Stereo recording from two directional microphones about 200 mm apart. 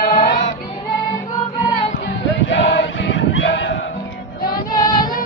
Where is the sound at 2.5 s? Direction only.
60° left (ahead or behind).